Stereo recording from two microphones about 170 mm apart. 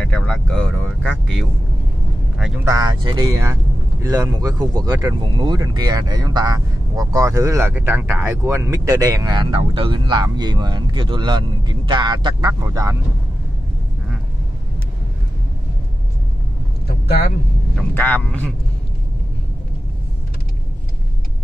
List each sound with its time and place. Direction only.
0.0 s speech: 5° left (ahead or behind)
2.6 s speech: 20° right (ahead or behind)
17.9 s a man's voice: 10° left (ahead or behind)